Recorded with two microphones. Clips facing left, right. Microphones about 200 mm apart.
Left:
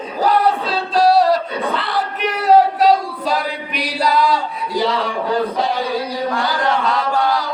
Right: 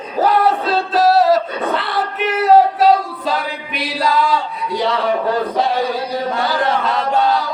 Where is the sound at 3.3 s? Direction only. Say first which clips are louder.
Left 1 dB; centre (ahead or behind).